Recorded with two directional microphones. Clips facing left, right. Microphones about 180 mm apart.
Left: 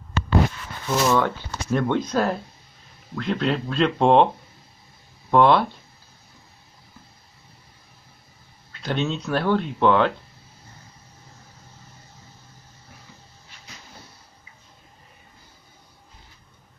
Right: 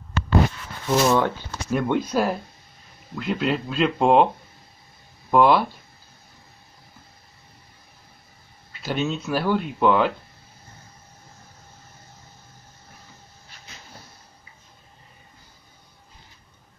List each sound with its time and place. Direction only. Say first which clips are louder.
0.8 s speech: right 1 dB; 20° right (ahead or behind)
1.7 s speech: even; 10° right (ahead or behind)
5.3 s speech: even; 5° right (ahead or behind)
8.8 s speech: even; 5° right (ahead or behind)